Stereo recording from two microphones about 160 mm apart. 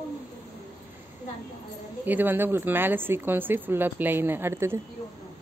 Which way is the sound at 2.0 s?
10° right (ahead or behind).